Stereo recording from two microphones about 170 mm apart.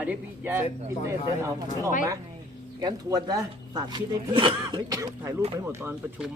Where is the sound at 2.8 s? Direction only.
20° right (ahead or behind).